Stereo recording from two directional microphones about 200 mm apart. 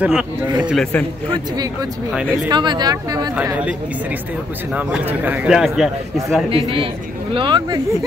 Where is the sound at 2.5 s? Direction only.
20° right (ahead or behind).